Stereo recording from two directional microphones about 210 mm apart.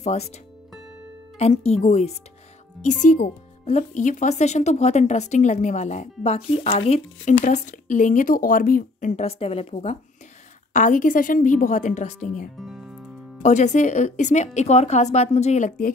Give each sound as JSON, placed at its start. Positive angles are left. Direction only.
{"t": 0.0, "sound": "speech", "side_deg": 30}
{"t": 1.4, "sound": "speech", "side_deg": 30}
{"t": 12.5, "sound": "music", "side_deg": 0}
{"t": 13.4, "sound": "speech", "side_deg": 35}